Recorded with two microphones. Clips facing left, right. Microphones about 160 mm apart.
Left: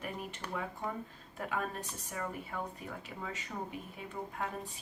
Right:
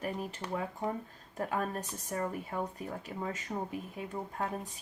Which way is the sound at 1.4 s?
40° right (ahead or behind).